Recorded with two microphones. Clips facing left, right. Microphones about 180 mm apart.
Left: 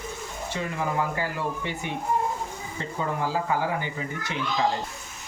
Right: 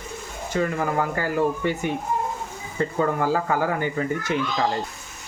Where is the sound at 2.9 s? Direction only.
55° right (ahead or behind).